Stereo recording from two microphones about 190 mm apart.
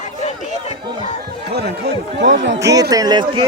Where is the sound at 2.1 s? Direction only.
70° right (ahead or behind).